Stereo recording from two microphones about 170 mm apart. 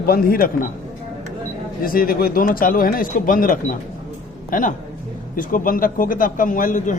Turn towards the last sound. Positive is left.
turn(degrees=50)  # may be behind; listen again after turning